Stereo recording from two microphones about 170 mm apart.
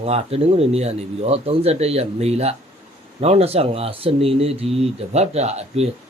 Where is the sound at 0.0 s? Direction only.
35° right (ahead or behind).